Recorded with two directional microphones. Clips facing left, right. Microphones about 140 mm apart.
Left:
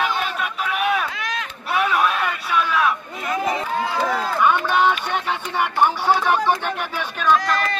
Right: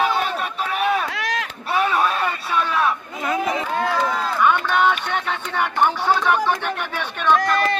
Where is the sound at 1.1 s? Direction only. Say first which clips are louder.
Right 3 dB; 75° right (ahead or behind).